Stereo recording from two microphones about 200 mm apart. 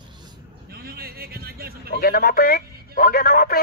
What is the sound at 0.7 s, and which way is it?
Vehicle, 50° right (ahead or behind).